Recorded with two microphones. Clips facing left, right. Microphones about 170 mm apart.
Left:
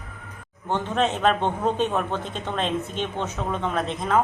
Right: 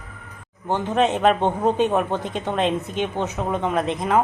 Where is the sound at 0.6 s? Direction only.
15° right (ahead or behind).